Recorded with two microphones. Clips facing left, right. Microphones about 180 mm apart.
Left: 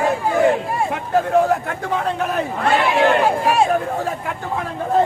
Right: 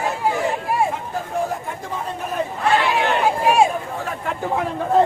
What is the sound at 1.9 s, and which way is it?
Speech, 70° left (ahead or behind).